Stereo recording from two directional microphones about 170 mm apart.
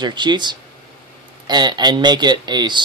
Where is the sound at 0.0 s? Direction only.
25° right (ahead or behind).